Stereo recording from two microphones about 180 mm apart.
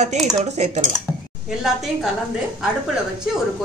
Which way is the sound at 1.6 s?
Centre (ahead or behind).